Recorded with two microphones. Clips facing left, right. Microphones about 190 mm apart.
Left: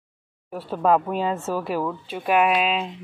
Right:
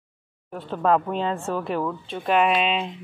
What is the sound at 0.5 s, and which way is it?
Speech, 10° left (ahead or behind).